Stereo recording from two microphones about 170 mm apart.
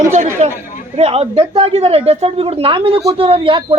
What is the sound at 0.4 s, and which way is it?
Chatter, 40° right (ahead or behind).